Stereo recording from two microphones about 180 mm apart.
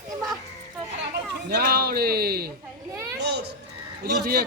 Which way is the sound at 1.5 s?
60° right (ahead or behind).